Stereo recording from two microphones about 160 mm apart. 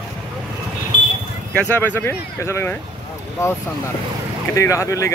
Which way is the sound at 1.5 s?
10° left (ahead or behind).